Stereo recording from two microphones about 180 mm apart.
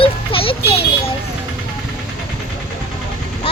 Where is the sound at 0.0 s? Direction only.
30° left (ahead or behind).